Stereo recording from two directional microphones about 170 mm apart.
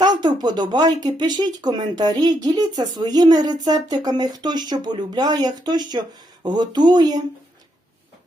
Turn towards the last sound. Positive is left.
turn(degrees=-25)  # may be behind; listen again after turning